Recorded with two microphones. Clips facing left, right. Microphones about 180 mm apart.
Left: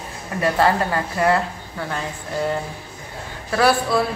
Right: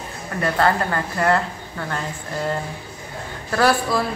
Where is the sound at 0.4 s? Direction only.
10° left (ahead or behind).